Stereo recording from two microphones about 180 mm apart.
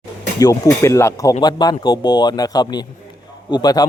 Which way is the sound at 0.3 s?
20° left (ahead or behind).